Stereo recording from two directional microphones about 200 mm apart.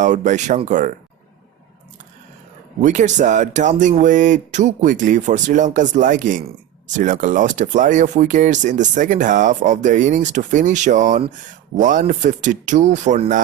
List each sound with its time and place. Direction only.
0.0 s speech: 35° right (ahead or behind)
2.8 s speech: 40° right (ahead or behind)